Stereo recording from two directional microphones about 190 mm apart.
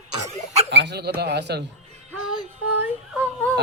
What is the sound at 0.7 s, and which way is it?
Speech, 65° right (ahead or behind).